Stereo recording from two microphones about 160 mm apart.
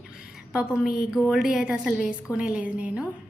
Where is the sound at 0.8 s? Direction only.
75° left (ahead or behind).